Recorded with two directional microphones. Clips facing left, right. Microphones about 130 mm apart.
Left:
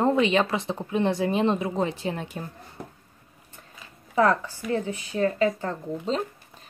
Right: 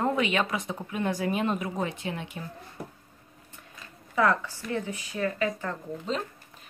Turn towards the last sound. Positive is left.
turn(degrees=30)  # may be behind; listen again after turning